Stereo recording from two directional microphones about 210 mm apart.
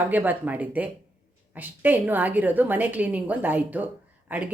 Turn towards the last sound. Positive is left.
turn(degrees=-10)  # may be behind; listen again after turning